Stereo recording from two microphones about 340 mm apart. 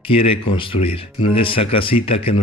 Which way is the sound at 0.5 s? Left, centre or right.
Centre.